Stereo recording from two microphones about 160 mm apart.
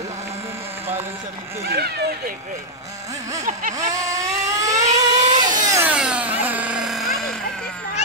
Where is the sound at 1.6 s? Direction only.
85° right.